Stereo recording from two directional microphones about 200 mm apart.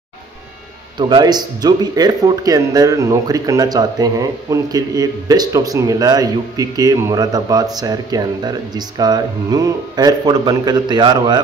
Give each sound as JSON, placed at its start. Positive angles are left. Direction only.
{"t": 0.9, "sound": "speech", "side_deg": -20}